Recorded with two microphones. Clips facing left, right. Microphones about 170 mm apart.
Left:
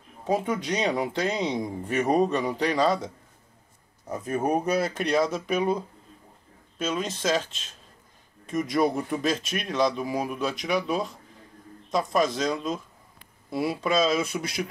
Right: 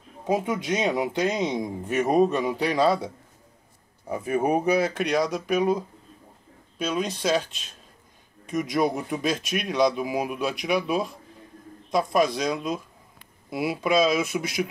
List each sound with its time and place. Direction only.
0.7 s speech: 5° right (ahead or behind)
2.1 s speech: 5° right (ahead or behind)
4.1 s speech: 10° right (ahead or behind)
5.2 s speech: centre (ahead or behind)
8.5 s speech: centre (ahead or behind)
9.2 s speech: 15° right (ahead or behind)
10.4 s speech: 15° right (ahead or behind)